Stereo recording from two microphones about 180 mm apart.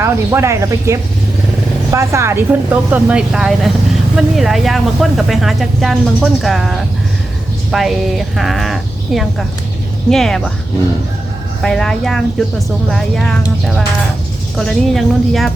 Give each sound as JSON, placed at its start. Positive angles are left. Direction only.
{"t": 0.0, "sound": "speech", "side_deg": -15}
{"t": 11.6, "sound": "speech", "side_deg": 5}